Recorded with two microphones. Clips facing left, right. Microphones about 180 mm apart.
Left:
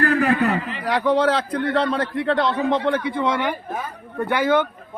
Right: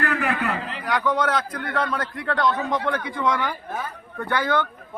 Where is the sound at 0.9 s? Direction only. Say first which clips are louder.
Left 5 dB; 30° left (ahead or behind).